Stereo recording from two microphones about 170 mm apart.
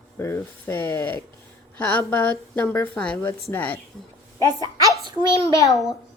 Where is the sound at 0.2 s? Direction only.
15° left (ahead or behind).